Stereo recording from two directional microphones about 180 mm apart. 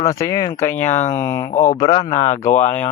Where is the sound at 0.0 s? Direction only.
20° left (ahead or behind).